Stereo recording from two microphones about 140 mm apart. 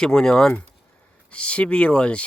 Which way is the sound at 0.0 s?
5° left (ahead or behind).